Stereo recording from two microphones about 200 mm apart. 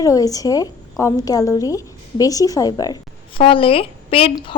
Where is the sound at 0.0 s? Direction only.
15° left (ahead or behind).